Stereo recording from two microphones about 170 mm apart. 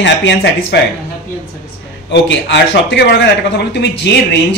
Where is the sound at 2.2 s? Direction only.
90° left.